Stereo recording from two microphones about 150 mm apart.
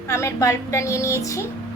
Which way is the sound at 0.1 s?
20° left (ahead or behind).